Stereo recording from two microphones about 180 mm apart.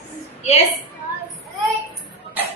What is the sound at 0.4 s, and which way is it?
Speech, 35° left (ahead or behind).